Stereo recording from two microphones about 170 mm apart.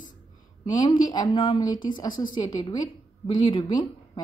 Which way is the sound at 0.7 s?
20° left (ahead or behind).